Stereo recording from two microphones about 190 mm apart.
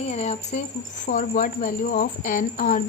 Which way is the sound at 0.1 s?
35° left (ahead or behind).